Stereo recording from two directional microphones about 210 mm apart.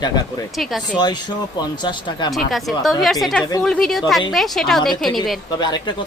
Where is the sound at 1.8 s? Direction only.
20° left (ahead or behind).